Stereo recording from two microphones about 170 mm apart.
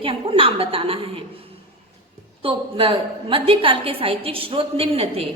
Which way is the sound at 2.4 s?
30° right (ahead or behind).